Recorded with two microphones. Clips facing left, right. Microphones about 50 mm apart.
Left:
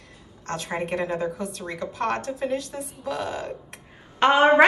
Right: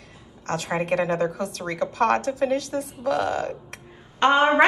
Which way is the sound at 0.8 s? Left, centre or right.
Right.